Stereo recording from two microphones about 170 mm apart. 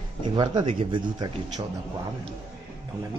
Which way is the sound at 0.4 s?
30° right (ahead or behind).